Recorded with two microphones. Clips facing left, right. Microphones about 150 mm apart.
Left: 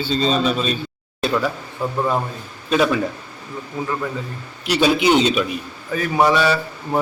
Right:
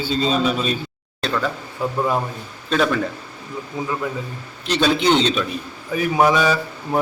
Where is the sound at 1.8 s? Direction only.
10° right (ahead or behind).